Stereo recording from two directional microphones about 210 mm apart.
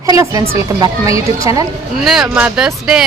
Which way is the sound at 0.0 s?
15° right (ahead or behind).